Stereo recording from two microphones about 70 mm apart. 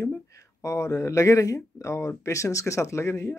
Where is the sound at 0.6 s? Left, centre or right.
Left.